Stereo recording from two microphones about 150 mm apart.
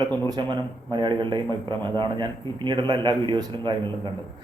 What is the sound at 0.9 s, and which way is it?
A man's voice, 30° right (ahead or behind).